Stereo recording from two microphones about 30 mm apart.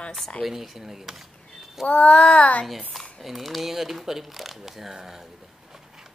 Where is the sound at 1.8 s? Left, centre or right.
Left.